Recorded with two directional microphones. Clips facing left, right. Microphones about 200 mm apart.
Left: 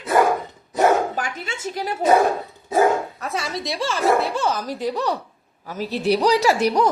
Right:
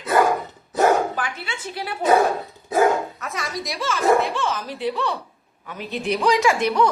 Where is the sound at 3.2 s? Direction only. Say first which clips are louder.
Left 3 dB; 30° left (ahead or behind).